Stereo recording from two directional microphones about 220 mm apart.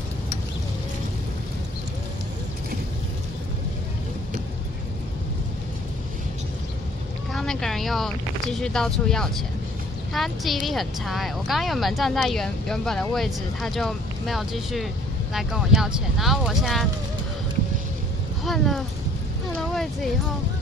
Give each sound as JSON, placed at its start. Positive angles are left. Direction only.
{"t": 7.3, "sound": "a woman's voice", "side_deg": 0}
{"t": 18.4, "sound": "speech", "side_deg": 0}
{"t": 19.7, "sound": "music", "side_deg": 0}